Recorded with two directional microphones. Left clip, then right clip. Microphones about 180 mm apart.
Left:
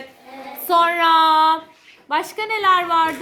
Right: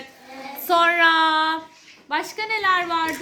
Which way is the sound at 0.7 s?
Centre (ahead or behind).